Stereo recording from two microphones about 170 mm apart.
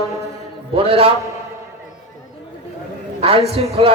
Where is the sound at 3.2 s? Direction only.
35° right (ahead or behind).